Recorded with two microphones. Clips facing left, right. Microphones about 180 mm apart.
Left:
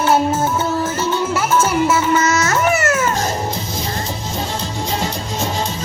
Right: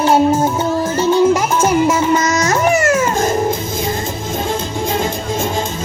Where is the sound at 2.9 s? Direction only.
30° right (ahead or behind).